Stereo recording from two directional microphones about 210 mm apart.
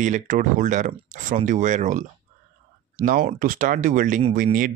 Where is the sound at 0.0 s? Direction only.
35° right (ahead or behind).